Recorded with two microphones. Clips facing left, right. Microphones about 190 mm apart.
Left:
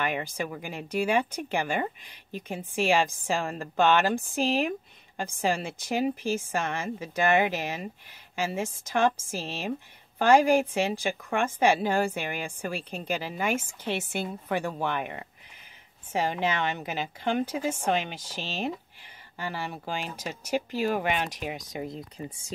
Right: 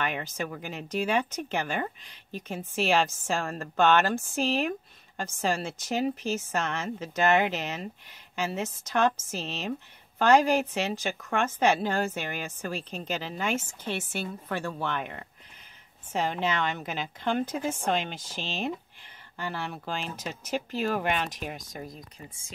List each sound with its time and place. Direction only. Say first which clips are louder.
0.0 s a woman's voice: left 2 dB; 10° left (ahead or behind)
9.3 s a woman's voice: left 1 dB; 10° left (ahead or behind)
21.8 s speech: left 6 dB; 30° left (ahead or behind)